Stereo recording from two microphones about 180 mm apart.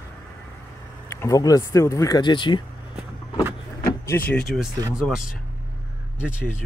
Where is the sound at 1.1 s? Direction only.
15° left (ahead or behind).